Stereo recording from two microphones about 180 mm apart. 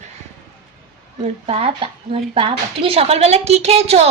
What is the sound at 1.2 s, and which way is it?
A woman's voice, 35° right (ahead or behind).